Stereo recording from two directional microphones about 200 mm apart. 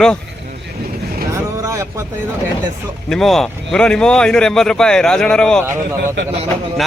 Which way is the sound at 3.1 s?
Centre (ahead or behind).